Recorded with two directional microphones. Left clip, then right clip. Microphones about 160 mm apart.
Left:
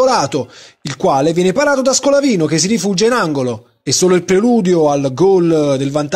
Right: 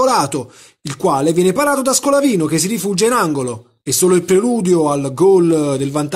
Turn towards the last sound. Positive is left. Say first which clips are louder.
# left 3 dB
turn(degrees=25)  # may be behind; listen again after turning